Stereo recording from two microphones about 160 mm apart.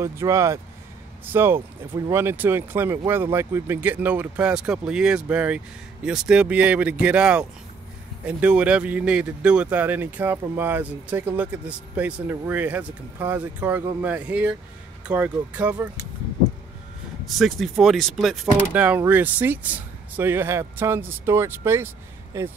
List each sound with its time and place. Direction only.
0.0 s speech: 20° right (ahead or behind)
17.4 s speech: centre (ahead or behind); by 22.5 s 15° right (ahead or behind)